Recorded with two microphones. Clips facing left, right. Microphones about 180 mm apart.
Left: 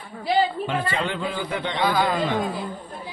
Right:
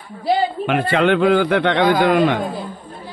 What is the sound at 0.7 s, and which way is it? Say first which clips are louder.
Speech: right 9 dB; 70° right (ahead or behind).